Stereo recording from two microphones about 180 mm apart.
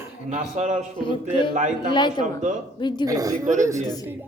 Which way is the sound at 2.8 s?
25° left (ahead or behind).